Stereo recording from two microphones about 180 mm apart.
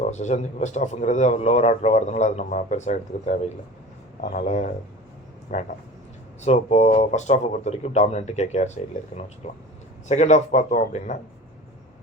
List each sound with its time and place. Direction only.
0.0 s a man's voice: 40° left (ahead or behind)